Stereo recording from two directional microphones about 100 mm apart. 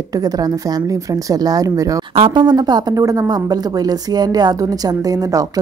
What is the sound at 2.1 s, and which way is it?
Speech, 60° right (ahead or behind).